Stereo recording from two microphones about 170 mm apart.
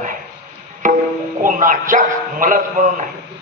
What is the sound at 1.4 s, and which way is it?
A man's voice, 55° right (ahead or behind).